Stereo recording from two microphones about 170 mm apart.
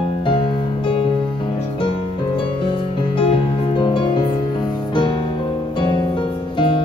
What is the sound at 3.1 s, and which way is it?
Music, 30° left (ahead or behind).